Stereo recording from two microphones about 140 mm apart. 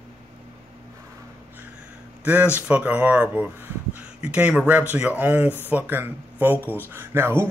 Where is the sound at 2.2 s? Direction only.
10° right (ahead or behind).